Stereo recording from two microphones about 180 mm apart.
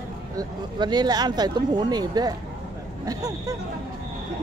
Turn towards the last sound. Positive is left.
turn(degrees=-20)  # may be behind; listen again after turning